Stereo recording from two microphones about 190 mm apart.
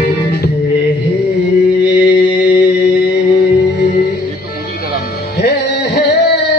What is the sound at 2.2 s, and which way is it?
Mantra, 60° left (ahead or behind).